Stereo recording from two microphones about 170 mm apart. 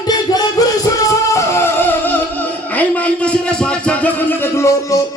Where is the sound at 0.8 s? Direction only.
20° left (ahead or behind).